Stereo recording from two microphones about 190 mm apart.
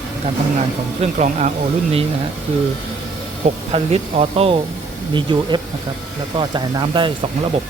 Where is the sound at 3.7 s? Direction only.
30° right (ahead or behind).